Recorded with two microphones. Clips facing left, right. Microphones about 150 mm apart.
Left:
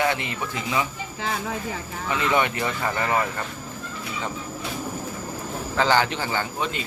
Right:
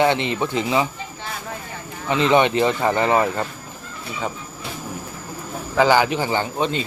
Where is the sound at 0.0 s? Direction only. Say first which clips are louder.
Right 6 dB; 25° right (ahead or behind).